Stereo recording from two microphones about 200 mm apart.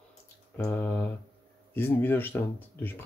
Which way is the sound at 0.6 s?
10° left (ahead or behind).